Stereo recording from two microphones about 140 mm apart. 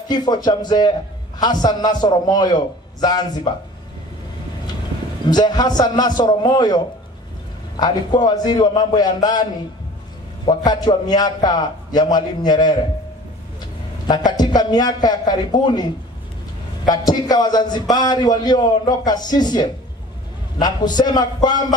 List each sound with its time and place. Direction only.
0.1 s a man's voice: 30° left (ahead or behind)
5.3 s a man's voice: 30° left (ahead or behind)
14.0 s a man's voice: 30° left (ahead or behind)
16.8 s a man's voice: 30° left (ahead or behind)